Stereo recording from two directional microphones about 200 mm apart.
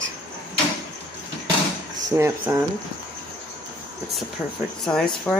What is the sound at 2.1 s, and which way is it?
Speech, 10° right (ahead or behind).